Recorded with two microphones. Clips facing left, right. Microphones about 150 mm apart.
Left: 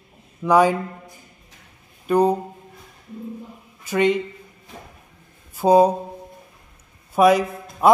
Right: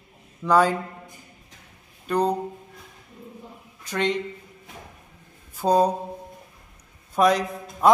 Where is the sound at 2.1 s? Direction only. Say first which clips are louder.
Left 5 dB; 5° left (ahead or behind).